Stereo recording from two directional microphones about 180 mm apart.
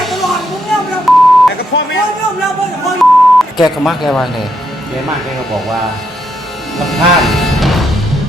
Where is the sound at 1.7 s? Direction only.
90° left.